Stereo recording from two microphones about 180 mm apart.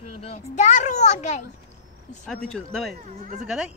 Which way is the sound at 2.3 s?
5° left (ahead or behind).